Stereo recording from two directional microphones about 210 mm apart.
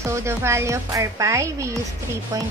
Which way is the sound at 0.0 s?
15° right (ahead or behind).